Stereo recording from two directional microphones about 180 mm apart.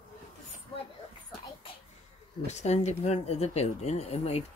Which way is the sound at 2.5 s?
40° left (ahead or behind).